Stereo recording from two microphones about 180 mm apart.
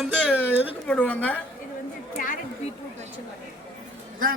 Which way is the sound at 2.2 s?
50° left (ahead or behind).